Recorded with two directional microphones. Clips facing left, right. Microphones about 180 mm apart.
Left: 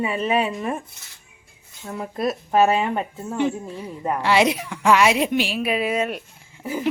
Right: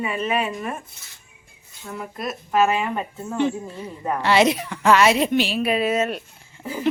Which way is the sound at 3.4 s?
10° left (ahead or behind).